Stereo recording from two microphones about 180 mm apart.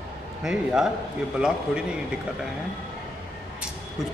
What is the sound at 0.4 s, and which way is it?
Speech, 5° right (ahead or behind).